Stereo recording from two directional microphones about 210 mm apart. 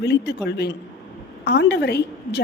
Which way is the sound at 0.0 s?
55° left (ahead or behind).